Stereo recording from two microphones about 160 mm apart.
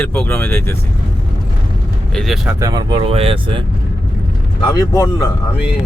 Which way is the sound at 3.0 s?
35° right (ahead or behind).